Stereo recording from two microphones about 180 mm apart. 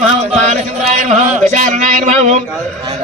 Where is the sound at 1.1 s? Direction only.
40° right (ahead or behind).